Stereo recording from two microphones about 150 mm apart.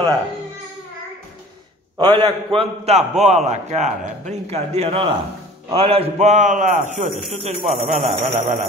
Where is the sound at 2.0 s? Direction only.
30° right (ahead or behind); by 7.1 s 55° right (ahead or behind).